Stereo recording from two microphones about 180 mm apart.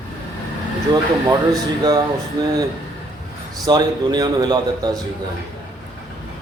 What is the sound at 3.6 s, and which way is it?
Speech, 20° right (ahead or behind).